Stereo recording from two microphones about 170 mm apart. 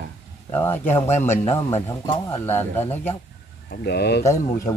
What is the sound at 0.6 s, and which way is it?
Speech, 15° left (ahead or behind).